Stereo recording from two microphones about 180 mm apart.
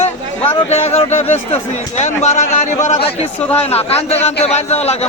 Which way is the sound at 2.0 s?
40° left (ahead or behind).